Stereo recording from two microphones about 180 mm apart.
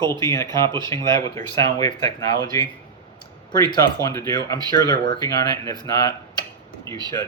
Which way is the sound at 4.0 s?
15° left (ahead or behind).